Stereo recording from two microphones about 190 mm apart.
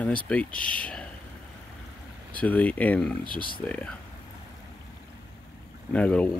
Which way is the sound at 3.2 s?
50° left (ahead or behind).